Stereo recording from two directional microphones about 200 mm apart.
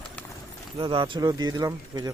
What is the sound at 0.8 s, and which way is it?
Speech, 25° right (ahead or behind).